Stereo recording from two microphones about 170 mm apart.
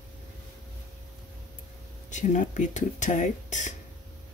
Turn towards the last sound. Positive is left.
turn(degrees=45)  # may be behind; listen again after turning